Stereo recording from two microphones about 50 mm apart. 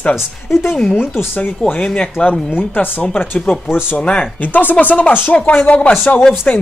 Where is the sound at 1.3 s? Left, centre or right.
Left.